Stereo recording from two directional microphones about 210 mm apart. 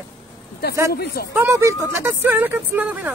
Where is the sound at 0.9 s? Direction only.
50° left (ahead or behind).